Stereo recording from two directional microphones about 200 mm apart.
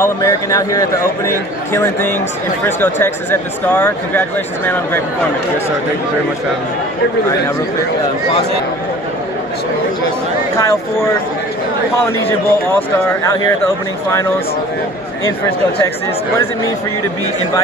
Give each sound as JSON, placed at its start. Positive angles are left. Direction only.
{"t": 0.0, "sound": "a man's voice", "side_deg": 15}
{"t": 10.5, "sound": "speech", "side_deg": 15}
{"t": 12.3, "sound": "speech", "side_deg": 15}